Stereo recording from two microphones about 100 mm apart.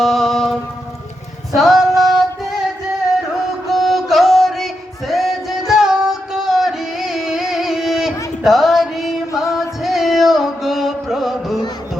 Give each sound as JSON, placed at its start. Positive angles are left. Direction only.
{"t": 0.0, "sound": "music", "side_deg": 0}
{"t": 3.7, "sound": "music", "side_deg": 0}